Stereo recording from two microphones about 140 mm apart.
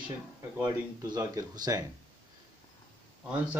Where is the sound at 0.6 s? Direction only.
30° right (ahead or behind).